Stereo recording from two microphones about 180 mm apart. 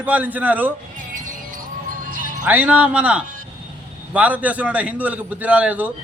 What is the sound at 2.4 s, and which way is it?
A man's voice, 10° right (ahead or behind).